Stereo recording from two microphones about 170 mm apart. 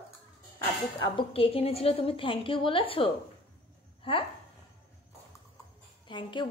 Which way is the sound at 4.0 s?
30° left (ahead or behind).